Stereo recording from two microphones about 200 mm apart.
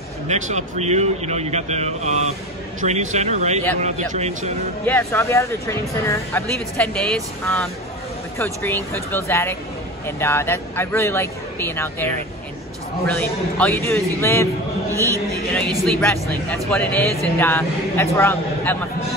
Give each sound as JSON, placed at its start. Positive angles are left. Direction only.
{"t": 0.3, "sound": "a man's voice", "side_deg": -35}
{"t": 4.8, "sound": "speech", "side_deg": 10}
{"t": 8.4, "sound": "speech", "side_deg": 10}
{"t": 15.5, "sound": "speech", "side_deg": 5}